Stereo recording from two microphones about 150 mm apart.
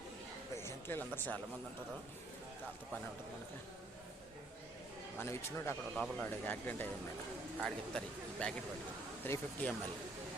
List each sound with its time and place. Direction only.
0.5 s a sound: 15° left (ahead or behind)
5.2 s speech: 15° left (ahead or behind)
5.9 s speech: centre (ahead or behind)
6.2 s speech: 10° left (ahead or behind)